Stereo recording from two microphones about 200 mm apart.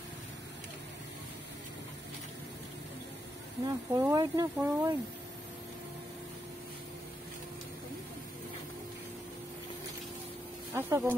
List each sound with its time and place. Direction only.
3.6 s speech: 20° right (ahead or behind)
10.7 s speech: 10° right (ahead or behind)